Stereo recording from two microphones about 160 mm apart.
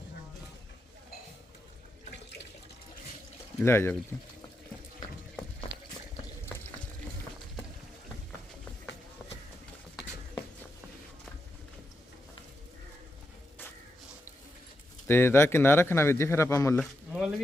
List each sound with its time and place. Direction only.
3.6 s speech: 15° left (ahead or behind)
6.4 s water: 15° left (ahead or behind)
15.0 s speech: 15° left (ahead or behind)
16.7 s a sound: centre (ahead or behind)